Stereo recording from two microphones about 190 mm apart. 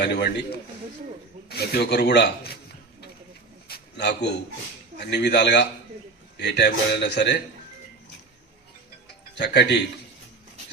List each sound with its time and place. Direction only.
0.0 s a man's voice: 60° left (ahead or behind)
3.7 s a sound: 60° left (ahead or behind)
4.9 s a man's voice: 60° left (ahead or behind)
9.4 s a man's voice: 65° left (ahead or behind)